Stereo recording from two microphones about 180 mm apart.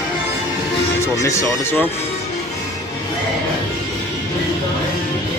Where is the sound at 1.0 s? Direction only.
15° left (ahead or behind).